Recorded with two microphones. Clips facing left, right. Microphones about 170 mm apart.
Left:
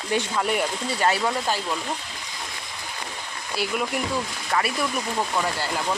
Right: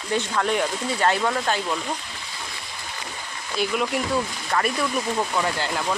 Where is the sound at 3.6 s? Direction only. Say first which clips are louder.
Right 2 dB; centre (ahead or behind).